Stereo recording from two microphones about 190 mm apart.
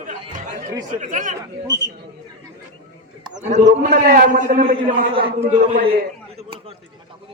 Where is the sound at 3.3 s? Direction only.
40° right (ahead or behind).